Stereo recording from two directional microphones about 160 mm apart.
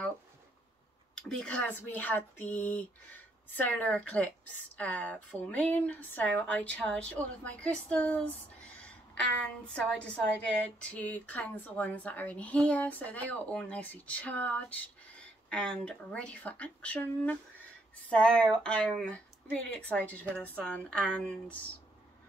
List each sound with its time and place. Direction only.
1.1 s speech: 5° left (ahead or behind)
18.2 s a sound: 5° left (ahead or behind)
18.9 s speech: 5° left (ahead or behind)